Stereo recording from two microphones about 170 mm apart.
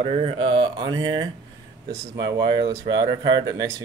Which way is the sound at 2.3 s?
25° right (ahead or behind).